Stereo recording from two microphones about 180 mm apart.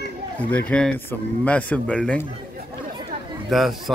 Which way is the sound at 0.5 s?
5° left (ahead or behind).